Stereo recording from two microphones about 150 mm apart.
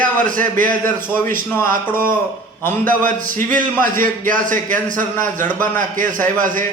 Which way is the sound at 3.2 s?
60° right (ahead or behind).